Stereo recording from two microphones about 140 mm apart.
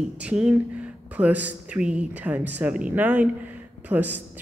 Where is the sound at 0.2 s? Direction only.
10° right (ahead or behind).